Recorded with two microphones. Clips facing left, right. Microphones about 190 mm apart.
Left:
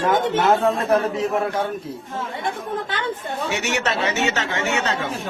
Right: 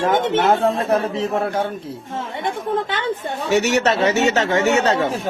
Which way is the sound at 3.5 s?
40° right (ahead or behind).